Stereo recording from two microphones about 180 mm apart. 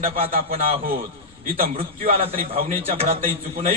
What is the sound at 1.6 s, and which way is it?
Speech, 55° right (ahead or behind).